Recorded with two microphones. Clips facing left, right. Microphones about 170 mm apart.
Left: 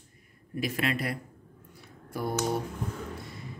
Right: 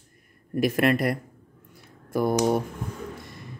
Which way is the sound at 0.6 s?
50° right (ahead or behind).